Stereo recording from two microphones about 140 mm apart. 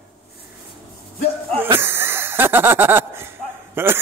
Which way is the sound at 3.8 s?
15° right (ahead or behind).